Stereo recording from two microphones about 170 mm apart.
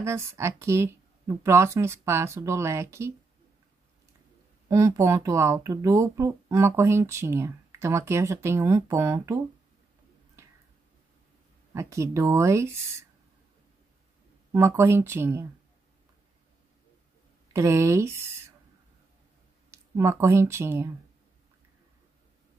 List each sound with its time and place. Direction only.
0.0 s speech: 15° right (ahead or behind)
4.6 s speech: 15° right (ahead or behind)
11.7 s speech: 15° right (ahead or behind)
14.5 s speech: 15° right (ahead or behind)
17.5 s speech: 15° right (ahead or behind)
19.7 s speech: 15° right (ahead or behind)